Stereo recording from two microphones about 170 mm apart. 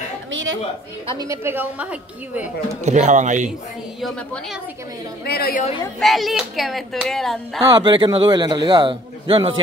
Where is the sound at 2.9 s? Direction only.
45° right (ahead or behind).